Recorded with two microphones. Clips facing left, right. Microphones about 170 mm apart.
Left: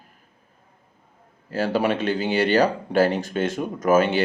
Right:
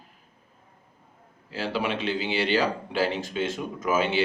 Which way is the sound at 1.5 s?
45° left (ahead or behind).